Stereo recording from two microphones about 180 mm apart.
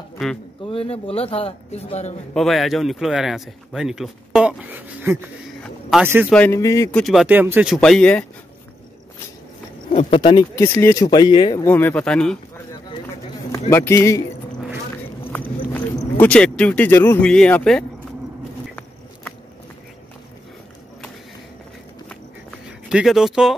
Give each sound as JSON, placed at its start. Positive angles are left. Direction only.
{"t": 0.7, "sound": "a man's voice", "side_deg": 35}
{"t": 2.3, "sound": "speech", "side_deg": 0}
{"t": 5.6, "sound": "a sound", "side_deg": 0}
{"t": 6.3, "sound": "speech", "side_deg": 10}
{"t": 7.0, "sound": "speech", "side_deg": 0}
{"t": 9.9, "sound": "a man's voice", "side_deg": 30}
{"t": 10.5, "sound": "speech", "side_deg": 15}
{"t": 11.6, "sound": "speech", "side_deg": 10}
{"t": 13.5, "sound": "speech", "side_deg": 15}
{"t": 15.3, "sound": "speech", "side_deg": 5}
{"t": 22.7, "sound": "speech", "side_deg": -5}